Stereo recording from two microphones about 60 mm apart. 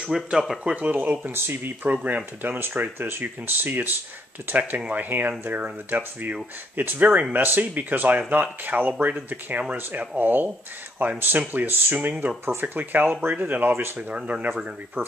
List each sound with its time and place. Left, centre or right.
0.0 s speech: centre
0.7 s speech: right
1.2 s speech: right
1.9 s speech: right
13.9 s speech: right
15.0 s speech: right